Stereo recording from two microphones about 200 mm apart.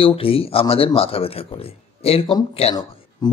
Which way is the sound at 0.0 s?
30° left (ahead or behind).